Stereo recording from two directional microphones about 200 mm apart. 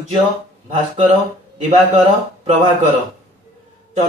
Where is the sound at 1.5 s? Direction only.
40° right (ahead or behind).